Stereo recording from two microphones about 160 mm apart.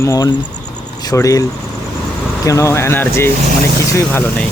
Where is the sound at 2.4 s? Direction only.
20° left (ahead or behind).